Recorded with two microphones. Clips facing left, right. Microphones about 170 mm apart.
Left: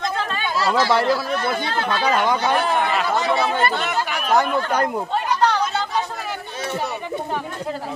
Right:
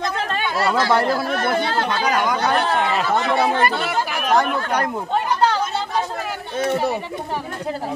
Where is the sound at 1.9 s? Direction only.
30° left (ahead or behind).